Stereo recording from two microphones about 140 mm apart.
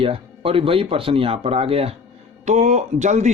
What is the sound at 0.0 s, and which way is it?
Speech, 40° right (ahead or behind).